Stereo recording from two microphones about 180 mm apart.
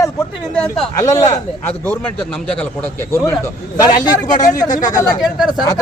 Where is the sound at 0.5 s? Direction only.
5° left (ahead or behind).